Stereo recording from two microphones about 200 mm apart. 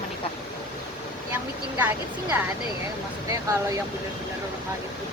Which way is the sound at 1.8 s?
10° right (ahead or behind).